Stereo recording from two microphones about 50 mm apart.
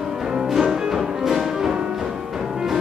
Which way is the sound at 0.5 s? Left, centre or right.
Centre.